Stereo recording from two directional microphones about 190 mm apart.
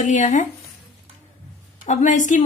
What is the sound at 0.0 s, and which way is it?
Speech, 40° left (ahead or behind).